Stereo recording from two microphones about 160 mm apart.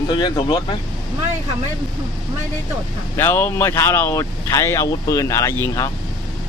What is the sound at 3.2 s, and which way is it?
Speech, 15° left (ahead or behind).